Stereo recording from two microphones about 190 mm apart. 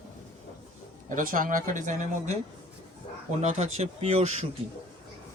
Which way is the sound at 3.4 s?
40° right (ahead or behind).